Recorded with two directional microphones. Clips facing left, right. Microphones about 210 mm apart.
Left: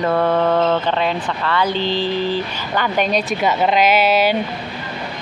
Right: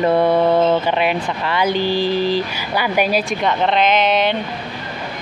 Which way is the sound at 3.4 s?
5° left (ahead or behind).